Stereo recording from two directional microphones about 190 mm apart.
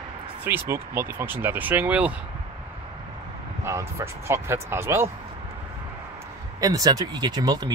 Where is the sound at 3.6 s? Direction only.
15° right (ahead or behind).